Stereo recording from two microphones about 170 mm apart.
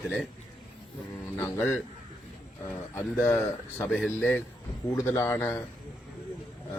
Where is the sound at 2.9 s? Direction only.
15° left (ahead or behind).